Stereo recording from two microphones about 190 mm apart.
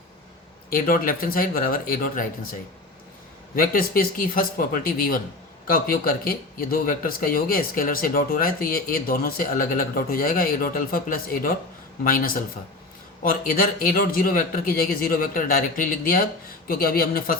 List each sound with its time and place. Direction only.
0.7 s speech: 50° left (ahead or behind)
3.5 s speech: 50° left (ahead or behind)
13.6 s speech: 50° left (ahead or behind)